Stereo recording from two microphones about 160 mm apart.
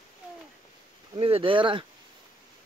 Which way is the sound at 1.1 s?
35° right (ahead or behind).